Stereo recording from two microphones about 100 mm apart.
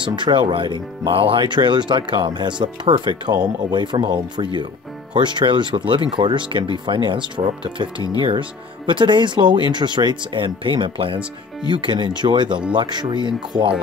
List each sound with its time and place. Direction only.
0.0 s speech: 55° right (ahead or behind)